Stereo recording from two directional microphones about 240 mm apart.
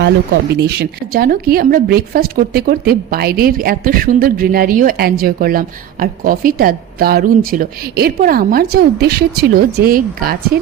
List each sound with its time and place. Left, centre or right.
0.0 s speech: right